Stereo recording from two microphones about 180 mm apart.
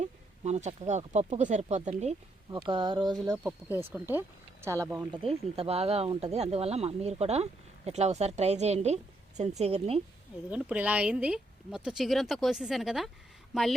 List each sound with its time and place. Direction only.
0.0 s speech: 40° right (ahead or behind); by 3.3 s 25° right (ahead or behind)
3.3 s speech: 10° right (ahead or behind)
5.1 s speech: 30° right (ahead or behind)
10.5 s speech: 5° right (ahead or behind)